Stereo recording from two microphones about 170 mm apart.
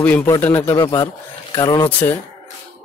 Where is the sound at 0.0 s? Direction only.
10° left (ahead or behind).